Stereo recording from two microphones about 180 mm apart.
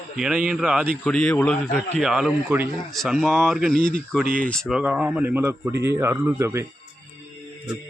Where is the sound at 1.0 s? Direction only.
5° left (ahead or behind); by 6.7 s 15° right (ahead or behind).